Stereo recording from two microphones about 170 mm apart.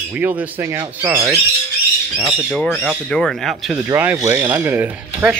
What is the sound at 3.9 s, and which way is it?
Speech, 15° right (ahead or behind).